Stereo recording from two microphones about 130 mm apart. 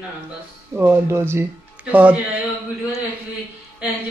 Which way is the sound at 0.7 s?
15° right (ahead or behind).